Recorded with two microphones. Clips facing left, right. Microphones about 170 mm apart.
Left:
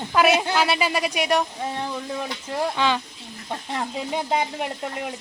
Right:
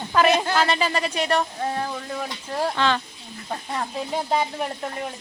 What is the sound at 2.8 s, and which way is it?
Speech, 10° left (ahead or behind).